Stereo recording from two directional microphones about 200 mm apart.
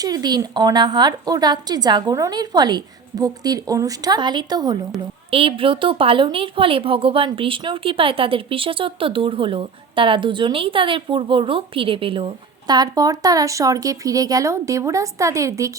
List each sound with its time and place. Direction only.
0.0 s a woman's voice: 20° right (ahead or behind)